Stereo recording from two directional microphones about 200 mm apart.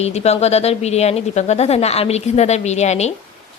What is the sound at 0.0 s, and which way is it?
A woman's voice, 30° left (ahead or behind).